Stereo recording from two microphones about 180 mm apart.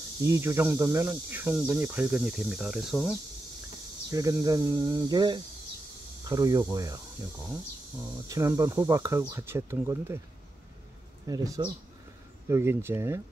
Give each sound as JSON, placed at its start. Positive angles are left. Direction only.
{"t": 0.2, "sound": "speech", "side_deg": -15}
{"t": 4.1, "sound": "speech", "side_deg": -20}
{"t": 11.2, "sound": "speech", "side_deg": -20}